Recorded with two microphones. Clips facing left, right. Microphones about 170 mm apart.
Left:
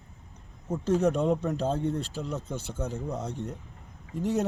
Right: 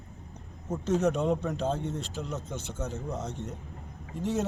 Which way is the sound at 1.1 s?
Centre (ahead or behind).